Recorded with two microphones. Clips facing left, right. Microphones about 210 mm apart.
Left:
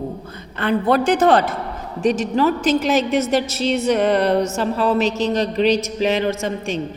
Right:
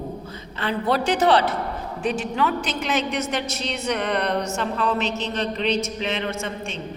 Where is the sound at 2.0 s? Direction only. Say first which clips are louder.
Left 7 dB; 40° left (ahead or behind).